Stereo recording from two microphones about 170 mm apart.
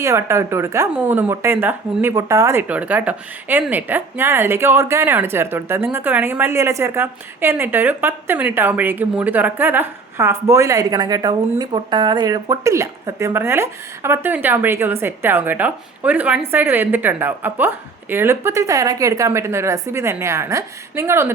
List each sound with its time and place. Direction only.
0.0 s speech: 15° right (ahead or behind)